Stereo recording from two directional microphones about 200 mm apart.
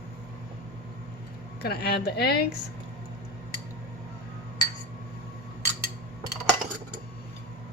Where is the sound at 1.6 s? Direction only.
50° left (ahead or behind).